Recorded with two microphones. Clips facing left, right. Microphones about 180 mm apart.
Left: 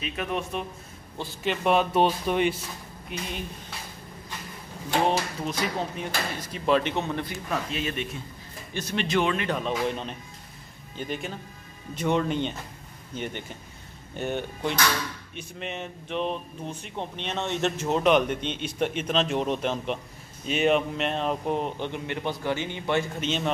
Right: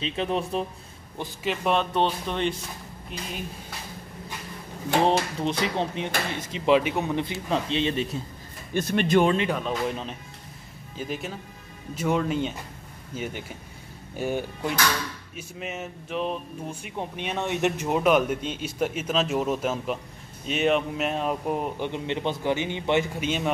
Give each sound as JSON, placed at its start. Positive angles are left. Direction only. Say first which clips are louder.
{"t": 0.0, "sound": "speech", "louder": "right 3 dB", "side_deg": -25}
{"t": 1.4, "sound": "speech", "louder": "left 2 dB", "side_deg": 0}
{"t": 3.1, "sound": "speech", "louder": "left 1 dB", "side_deg": 0}
{"t": 5.0, "sound": "speech", "louder": "right 3 dB", "side_deg": -30}
{"t": 7.4, "sound": "speech", "louder": "right 5 dB", "side_deg": -25}
{"t": 8.7, "sound": "speech", "louder": "right 5 dB", "side_deg": -55}
{"t": 9.5, "sound": "speech", "louder": "even", "side_deg": 0}